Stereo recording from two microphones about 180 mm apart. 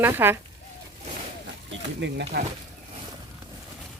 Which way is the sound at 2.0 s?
65° right (ahead or behind).